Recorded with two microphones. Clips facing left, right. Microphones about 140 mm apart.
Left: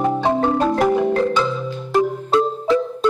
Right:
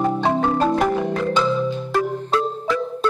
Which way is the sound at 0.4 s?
Centre (ahead or behind).